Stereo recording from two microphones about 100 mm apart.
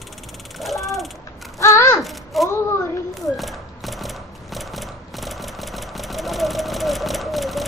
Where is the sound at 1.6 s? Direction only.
30° left (ahead or behind).